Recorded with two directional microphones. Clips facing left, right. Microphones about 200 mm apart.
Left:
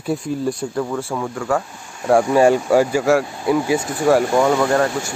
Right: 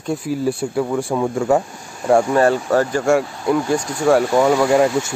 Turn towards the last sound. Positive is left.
turn(degrees=-10)  # may be behind; listen again after turning